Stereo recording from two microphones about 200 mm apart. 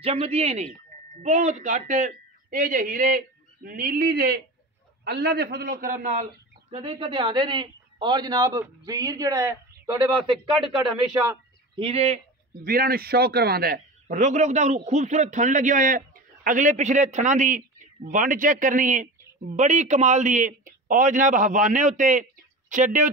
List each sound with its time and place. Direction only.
0.0 s a woman's voice: 30° right (ahead or behind)
6.7 s speech: 30° right (ahead or behind)
11.7 s a man's voice: 30° right (ahead or behind)
12.6 s a man's voice: 45° right (ahead or behind)